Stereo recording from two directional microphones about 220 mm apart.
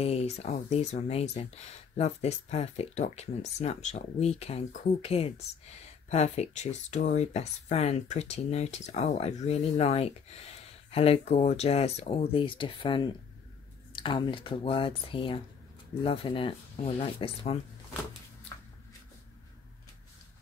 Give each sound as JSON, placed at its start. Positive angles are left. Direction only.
{"t": 0.0, "sound": "speech", "side_deg": 30}